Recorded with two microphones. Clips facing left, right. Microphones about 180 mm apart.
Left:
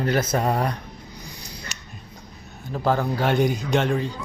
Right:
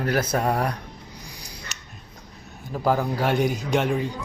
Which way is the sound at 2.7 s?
5° right (ahead or behind).